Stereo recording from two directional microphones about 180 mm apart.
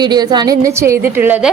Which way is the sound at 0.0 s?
25° right (ahead or behind).